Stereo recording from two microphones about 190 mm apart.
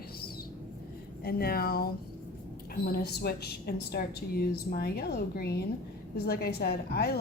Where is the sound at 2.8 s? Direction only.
55° left (ahead or behind).